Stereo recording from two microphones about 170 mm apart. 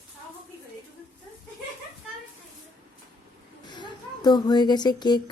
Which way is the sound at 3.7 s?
25° left (ahead or behind).